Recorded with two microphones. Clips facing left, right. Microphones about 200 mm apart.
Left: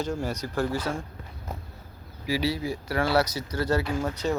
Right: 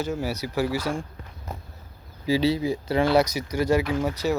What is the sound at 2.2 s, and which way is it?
Speech, 25° right (ahead or behind).